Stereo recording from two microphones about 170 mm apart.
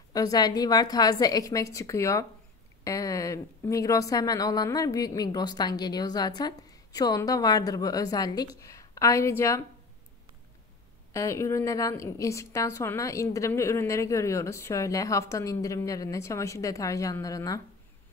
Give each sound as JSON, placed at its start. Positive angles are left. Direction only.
{"t": 0.1, "sound": "a woman's voice", "side_deg": 20}
{"t": 11.1, "sound": "a woman's voice", "side_deg": 15}